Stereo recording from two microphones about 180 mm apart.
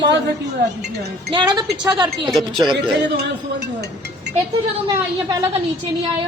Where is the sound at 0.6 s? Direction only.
60° right (ahead or behind).